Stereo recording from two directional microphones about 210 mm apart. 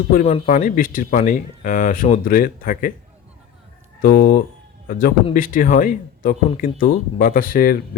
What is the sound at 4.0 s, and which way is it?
A man's voice, 45° left (ahead or behind).